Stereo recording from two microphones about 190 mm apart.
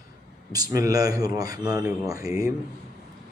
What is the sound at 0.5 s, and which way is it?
A man's voice, 20° right (ahead or behind).